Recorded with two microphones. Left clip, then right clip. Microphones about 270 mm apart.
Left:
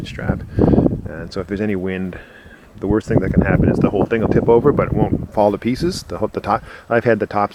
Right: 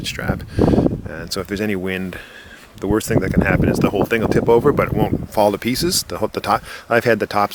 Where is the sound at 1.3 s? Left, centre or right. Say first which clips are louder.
Even; centre.